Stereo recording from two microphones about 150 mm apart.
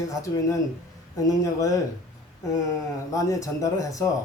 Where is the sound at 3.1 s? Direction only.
20° left (ahead or behind).